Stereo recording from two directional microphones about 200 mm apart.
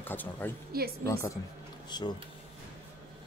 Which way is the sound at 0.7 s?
50° right (ahead or behind).